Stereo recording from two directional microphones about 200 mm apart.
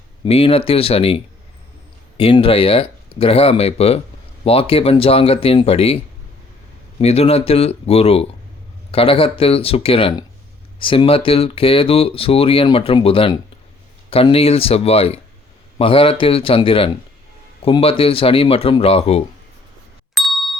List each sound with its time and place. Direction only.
0.3 s speech: 30° left (ahead or behind)
7.0 s speech: 30° left (ahead or behind)
20.1 s ding: centre (ahead or behind)